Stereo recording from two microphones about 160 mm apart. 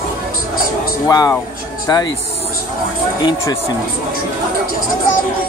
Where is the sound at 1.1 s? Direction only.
20° left (ahead or behind).